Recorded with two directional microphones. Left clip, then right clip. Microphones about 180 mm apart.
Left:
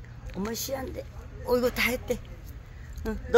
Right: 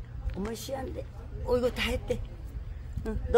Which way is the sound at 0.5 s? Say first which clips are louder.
Left 3 dB; 35° left (ahead or behind).